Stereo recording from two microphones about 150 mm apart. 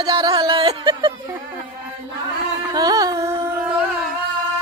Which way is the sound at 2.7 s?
25° right (ahead or behind).